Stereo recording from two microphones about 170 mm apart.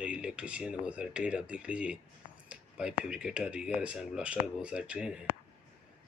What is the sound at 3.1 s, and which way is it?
Speech, 5° right (ahead or behind).